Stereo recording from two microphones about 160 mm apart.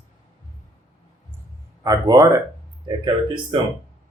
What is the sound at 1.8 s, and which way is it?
Speech, 20° right (ahead or behind).